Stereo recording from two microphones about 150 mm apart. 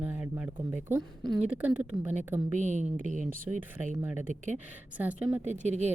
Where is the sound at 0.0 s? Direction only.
10° right (ahead or behind).